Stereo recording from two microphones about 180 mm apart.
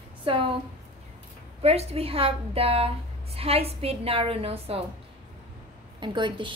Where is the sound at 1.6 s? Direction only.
35° right (ahead or behind).